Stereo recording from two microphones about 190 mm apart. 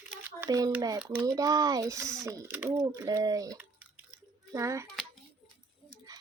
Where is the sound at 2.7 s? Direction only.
20° right (ahead or behind).